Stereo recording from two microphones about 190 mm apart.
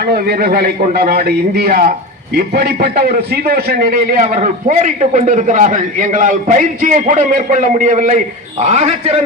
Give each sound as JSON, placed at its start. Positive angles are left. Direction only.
{"t": 0.1, "sound": "a man's voice", "side_deg": -50}
{"t": 4.4, "sound": "a man's voice", "side_deg": -40}